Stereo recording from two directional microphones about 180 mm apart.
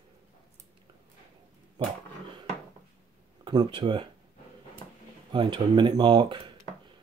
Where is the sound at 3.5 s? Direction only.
25° right (ahead or behind).